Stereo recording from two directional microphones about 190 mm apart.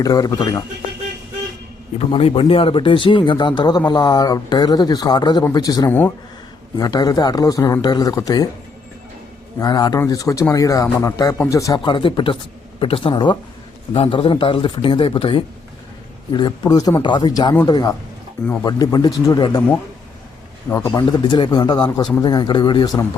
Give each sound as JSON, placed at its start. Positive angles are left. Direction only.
{"t": 0.0, "sound": "speech", "side_deg": 20}
{"t": 2.0, "sound": "speech", "side_deg": 30}
{"t": 9.6, "sound": "speech", "side_deg": 20}
{"t": 20.7, "sound": "speech", "side_deg": 15}